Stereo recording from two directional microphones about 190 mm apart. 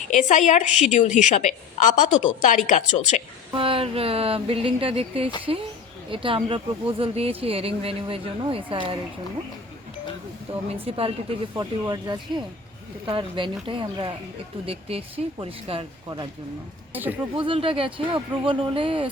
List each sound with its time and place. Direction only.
0.1 s a woman's voice: 40° left (ahead or behind)
3.5 s speech: 30° right (ahead or behind)
10.7 s speech: 30° right (ahead or behind)
16.9 s speech: 10° right (ahead or behind)
17.3 s speech: 25° right (ahead or behind)